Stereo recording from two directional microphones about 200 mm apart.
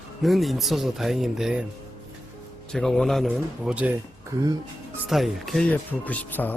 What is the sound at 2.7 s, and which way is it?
Speech, centre (ahead or behind).